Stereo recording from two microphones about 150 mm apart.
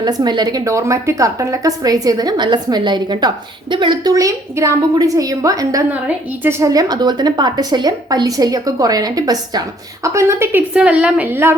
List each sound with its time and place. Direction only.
0.0 s a woman's voice: 30° right (ahead or behind)
5.9 s a woman's voice: 10° right (ahead or behind)
10.8 s a sound: 5° right (ahead or behind)